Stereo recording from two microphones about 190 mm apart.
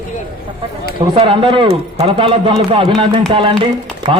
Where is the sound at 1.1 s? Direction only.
25° right (ahead or behind).